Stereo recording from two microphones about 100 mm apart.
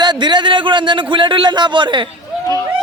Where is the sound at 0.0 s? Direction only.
50° right (ahead or behind).